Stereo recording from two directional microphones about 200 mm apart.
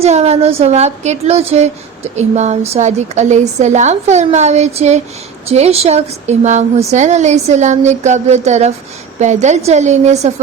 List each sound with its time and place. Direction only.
0.0 s a woman's voice: 30° right (ahead or behind)